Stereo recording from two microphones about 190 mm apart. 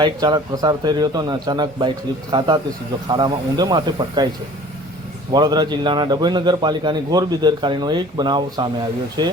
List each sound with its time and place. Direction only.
0.0 s a man's voice: 20° right (ahead or behind)
5.3 s a man's voice: 20° right (ahead or behind)